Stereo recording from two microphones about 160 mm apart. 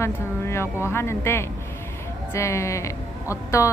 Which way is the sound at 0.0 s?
15° left (ahead or behind).